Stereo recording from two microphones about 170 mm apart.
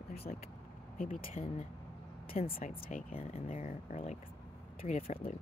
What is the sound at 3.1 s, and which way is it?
Speech, 35° left (ahead or behind).